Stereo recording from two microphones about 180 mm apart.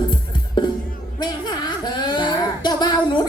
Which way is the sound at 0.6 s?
25° left (ahead or behind).